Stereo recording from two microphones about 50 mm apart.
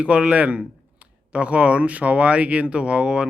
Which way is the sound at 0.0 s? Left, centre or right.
Right.